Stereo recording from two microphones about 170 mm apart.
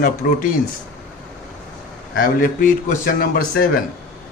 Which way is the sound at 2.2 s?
55° left (ahead or behind).